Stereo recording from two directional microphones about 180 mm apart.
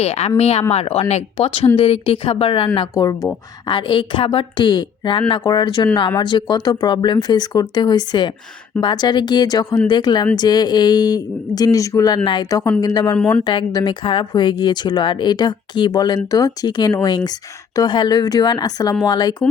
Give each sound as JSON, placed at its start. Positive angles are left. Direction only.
{"t": 0.0, "sound": "a woman's voice", "side_deg": 35}
{"t": 13.1, "sound": "speech", "side_deg": 5}
{"t": 13.4, "sound": "a woman's voice", "side_deg": 25}